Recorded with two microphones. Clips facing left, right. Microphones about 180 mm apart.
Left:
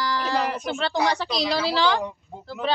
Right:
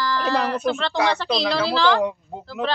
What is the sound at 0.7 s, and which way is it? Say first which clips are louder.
Speech: right 2 dB; 90° right.